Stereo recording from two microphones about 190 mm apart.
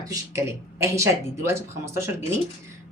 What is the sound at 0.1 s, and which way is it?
A woman's voice, 15° right (ahead or behind).